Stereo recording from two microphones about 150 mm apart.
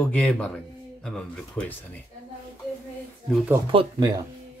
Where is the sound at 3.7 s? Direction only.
35° right (ahead or behind).